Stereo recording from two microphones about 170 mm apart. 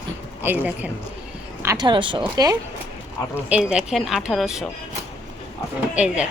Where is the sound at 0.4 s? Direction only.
10° right (ahead or behind).